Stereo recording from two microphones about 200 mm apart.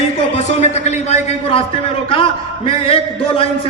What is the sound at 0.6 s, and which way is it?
A man's voice, 35° left (ahead or behind).